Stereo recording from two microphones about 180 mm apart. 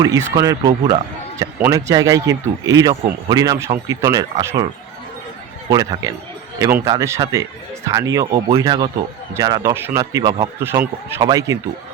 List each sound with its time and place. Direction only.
0.0 s speech: 15° right (ahead or behind)
5.6 s speech: 20° right (ahead or behind)